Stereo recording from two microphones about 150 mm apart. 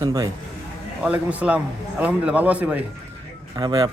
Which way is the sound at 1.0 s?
10° right (ahead or behind).